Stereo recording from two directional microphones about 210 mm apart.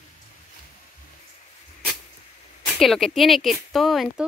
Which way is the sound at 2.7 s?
Centre (ahead or behind).